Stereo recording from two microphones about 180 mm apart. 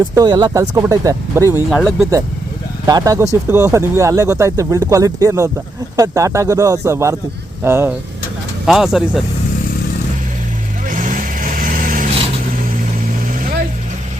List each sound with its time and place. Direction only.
0.0 s speech: 20° right (ahead or behind)
1.7 s speech: centre (ahead or behind)
2.8 s speech: 20° right (ahead or behind)
8.6 s speech: centre (ahead or behind)
10.8 s vehicle: 50° right (ahead or behind)